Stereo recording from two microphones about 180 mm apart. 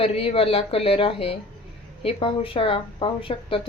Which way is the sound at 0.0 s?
30° left (ahead or behind).